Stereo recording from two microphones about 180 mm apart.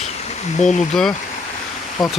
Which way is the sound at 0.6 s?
5° left (ahead or behind).